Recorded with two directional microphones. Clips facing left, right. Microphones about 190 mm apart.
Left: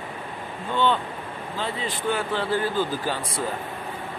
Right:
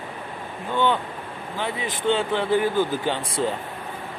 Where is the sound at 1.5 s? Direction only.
15° right (ahead or behind).